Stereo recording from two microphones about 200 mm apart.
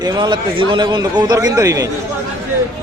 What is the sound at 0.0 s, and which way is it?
A man's voice, 20° right (ahead or behind).